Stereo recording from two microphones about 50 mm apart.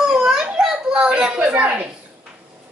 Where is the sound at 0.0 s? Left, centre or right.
Centre.